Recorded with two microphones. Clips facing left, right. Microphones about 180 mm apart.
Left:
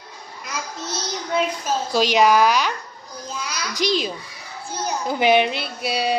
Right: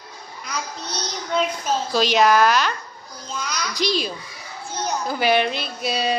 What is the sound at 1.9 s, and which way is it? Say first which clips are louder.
Speech: left 1 dB; 15° left (ahead or behind).